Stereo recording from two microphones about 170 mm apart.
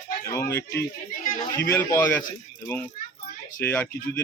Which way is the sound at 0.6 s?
70° left (ahead or behind).